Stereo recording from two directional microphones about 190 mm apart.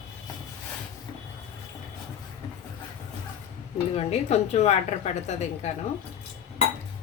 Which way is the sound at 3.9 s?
35° left (ahead or behind).